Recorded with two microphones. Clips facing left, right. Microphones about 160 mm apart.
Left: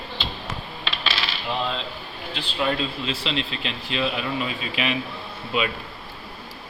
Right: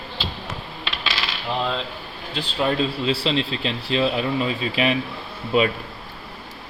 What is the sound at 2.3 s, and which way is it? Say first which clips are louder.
Speech: right 3 dB; 35° right (ahead or behind).